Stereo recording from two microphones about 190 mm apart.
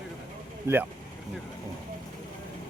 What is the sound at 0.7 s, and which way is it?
Speech, 15° right (ahead or behind).